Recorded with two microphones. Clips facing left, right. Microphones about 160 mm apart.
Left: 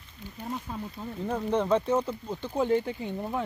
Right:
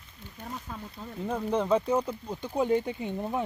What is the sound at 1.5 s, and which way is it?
Speech, 5° right (ahead or behind).